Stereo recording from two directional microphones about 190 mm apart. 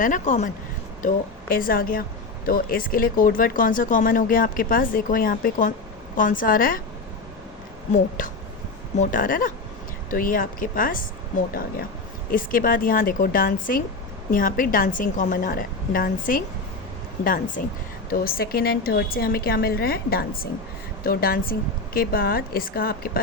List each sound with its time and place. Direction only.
0.0 s speech: 40° left (ahead or behind)
7.9 s speech: 45° left (ahead or behind)